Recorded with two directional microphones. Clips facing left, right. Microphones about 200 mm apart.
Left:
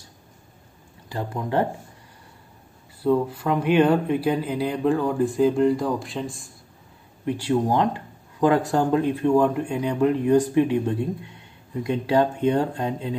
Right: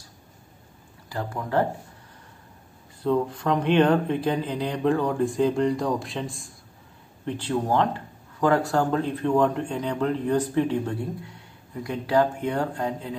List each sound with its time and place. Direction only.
1.0 s speech: 20° left (ahead or behind)
3.0 s a man's voice: 5° left (ahead or behind); by 13.2 s 20° left (ahead or behind)